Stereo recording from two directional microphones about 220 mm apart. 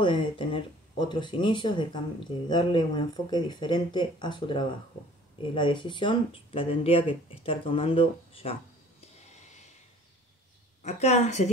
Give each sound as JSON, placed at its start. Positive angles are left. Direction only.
{"t": 0.0, "sound": "speech", "side_deg": 20}
{"t": 10.8, "sound": "a woman's voice", "side_deg": 30}